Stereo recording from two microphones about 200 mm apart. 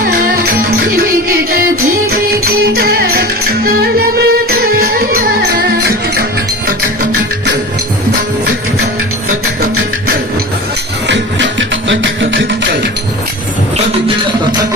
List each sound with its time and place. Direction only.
2.0 s music: 50° right (ahead or behind)
11.1 s music: 65° right (ahead or behind)